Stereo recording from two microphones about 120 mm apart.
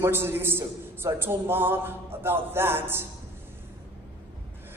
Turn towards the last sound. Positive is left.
turn(degrees=-20)  # may be behind; listen again after turning